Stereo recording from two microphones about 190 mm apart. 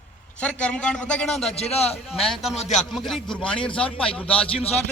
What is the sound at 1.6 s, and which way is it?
Speech, 35° left (ahead or behind).